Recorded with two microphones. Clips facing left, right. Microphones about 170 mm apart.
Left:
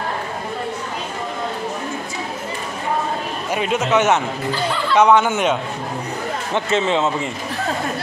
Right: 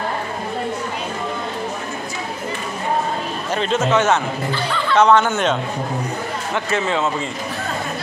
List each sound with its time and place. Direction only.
3.5 s speech: 10° left (ahead or behind)
6.5 s speech: 20° left (ahead or behind)